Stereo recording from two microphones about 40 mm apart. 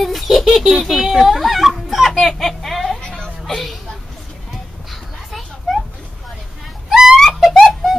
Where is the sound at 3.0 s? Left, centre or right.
Centre.